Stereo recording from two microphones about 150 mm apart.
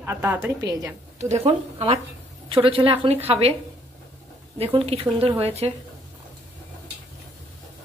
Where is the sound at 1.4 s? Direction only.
45° right (ahead or behind).